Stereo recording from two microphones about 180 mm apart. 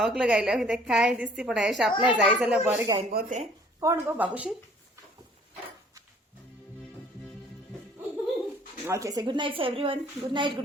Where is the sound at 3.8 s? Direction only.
15° right (ahead or behind).